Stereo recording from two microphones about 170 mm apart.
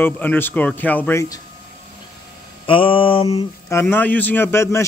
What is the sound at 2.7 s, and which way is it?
Mantra, 30° left (ahead or behind).